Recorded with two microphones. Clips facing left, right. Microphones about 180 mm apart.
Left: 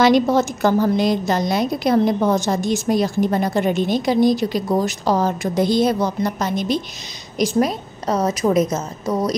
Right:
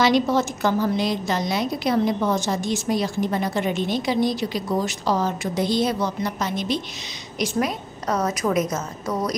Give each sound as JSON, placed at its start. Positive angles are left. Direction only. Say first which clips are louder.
{"t": 0.0, "sound": "a woman's voice", "louder": "left 4 dB", "side_deg": 45}